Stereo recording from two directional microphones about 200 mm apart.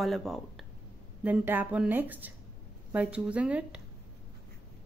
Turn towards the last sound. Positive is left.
turn(degrees=-5)  # may be behind; listen again after turning